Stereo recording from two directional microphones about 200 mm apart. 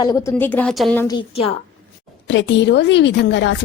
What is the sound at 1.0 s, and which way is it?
Speech, 20° left (ahead or behind).